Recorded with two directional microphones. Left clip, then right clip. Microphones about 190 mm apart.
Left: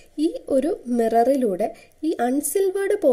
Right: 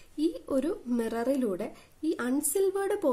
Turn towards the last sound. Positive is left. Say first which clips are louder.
# left 8 dB
turn(degrees=15)  # may be behind; listen again after turning